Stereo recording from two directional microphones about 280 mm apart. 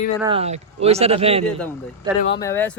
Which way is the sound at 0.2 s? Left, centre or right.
Centre.